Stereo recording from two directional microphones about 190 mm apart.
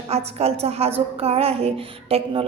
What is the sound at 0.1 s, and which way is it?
A woman's voice, 35° right (ahead or behind).